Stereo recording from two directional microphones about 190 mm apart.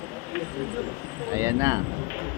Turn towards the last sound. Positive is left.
turn(degrees=-15)  # may be behind; listen again after turning